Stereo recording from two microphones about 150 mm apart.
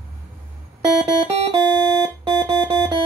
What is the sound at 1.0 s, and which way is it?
Music, 40° right (ahead or behind).